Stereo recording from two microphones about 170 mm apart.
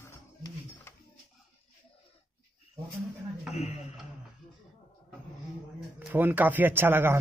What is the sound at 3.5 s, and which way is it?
Speech, 40° left (ahead or behind).